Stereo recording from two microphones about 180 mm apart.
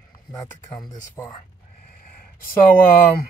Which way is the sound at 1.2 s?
15° left (ahead or behind).